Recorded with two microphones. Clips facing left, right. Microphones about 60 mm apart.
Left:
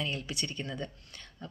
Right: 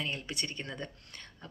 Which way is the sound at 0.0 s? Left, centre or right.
Right.